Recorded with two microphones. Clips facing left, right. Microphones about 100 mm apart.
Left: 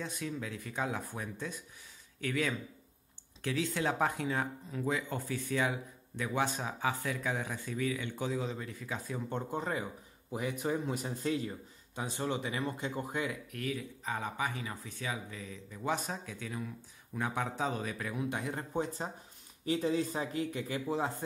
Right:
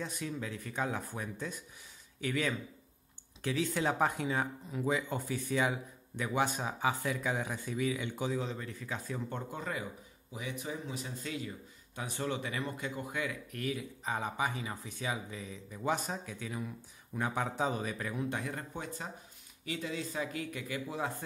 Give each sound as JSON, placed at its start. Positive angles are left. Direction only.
{"t": 0.0, "sound": "a man's voice", "side_deg": 0}
{"t": 8.3, "sound": "speech", "side_deg": 5}
{"t": 9.3, "sound": "speech", "side_deg": 30}
{"t": 10.3, "sound": "speech", "side_deg": 45}
{"t": 11.9, "sound": "speech", "side_deg": 20}
{"t": 13.5, "sound": "speech", "side_deg": -5}
{"t": 14.0, "sound": "speech", "side_deg": -20}
{"t": 15.8, "sound": "speech", "side_deg": 0}
{"t": 20.3, "sound": "speech", "side_deg": 30}